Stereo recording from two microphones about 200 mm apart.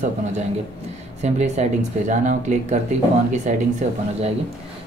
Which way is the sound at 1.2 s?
35° right (ahead or behind).